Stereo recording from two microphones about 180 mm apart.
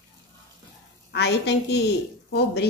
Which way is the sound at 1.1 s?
70° left (ahead or behind).